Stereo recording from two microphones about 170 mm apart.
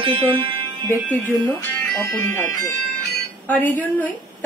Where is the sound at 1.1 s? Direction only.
10° left (ahead or behind).